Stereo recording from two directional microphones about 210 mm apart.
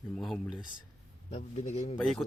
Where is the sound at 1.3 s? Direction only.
30° left (ahead or behind).